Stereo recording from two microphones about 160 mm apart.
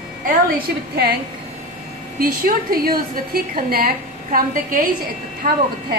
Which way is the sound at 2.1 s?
65° right (ahead or behind).